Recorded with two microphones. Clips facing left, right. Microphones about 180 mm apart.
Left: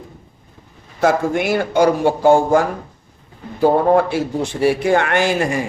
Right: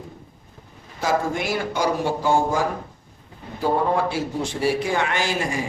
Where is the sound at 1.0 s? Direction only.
60° left (ahead or behind).